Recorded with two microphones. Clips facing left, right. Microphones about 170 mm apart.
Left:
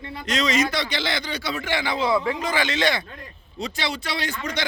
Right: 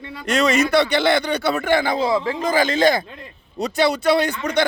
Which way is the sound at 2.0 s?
30° right (ahead or behind).